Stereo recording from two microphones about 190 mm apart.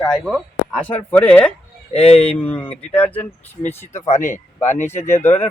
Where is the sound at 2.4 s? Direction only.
10° left (ahead or behind).